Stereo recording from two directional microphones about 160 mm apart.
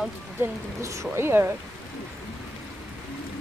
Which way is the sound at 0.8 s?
20° right (ahead or behind).